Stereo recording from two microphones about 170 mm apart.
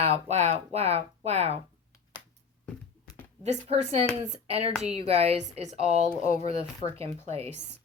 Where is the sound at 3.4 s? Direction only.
40° right (ahead or behind).